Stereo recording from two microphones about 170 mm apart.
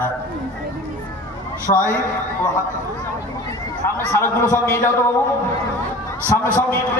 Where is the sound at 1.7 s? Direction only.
45° left (ahead or behind).